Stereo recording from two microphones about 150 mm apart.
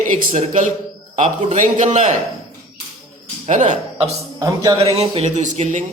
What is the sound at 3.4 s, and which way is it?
Speech, 55° right (ahead or behind).